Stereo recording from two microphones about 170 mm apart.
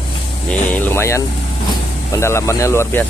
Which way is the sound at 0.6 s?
10° left (ahead or behind).